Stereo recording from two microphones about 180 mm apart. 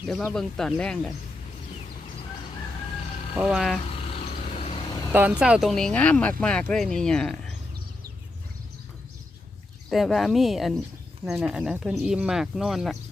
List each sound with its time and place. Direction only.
0.0 s speech: 5° right (ahead or behind)
3.3 s speech: 5° right (ahead or behind)
3.9 s vehicle: 35° left (ahead or behind)
5.1 s speech: 10° right (ahead or behind)
9.9 s speech: centre (ahead or behind)